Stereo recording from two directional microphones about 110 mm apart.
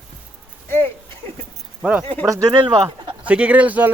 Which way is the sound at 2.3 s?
35° right (ahead or behind).